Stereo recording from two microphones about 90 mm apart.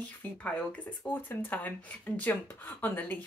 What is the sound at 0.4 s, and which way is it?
Speech, 15° left (ahead or behind).